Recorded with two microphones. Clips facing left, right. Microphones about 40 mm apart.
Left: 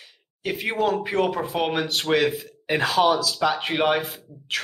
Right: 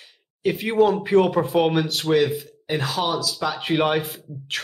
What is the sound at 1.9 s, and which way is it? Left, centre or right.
Speech, left.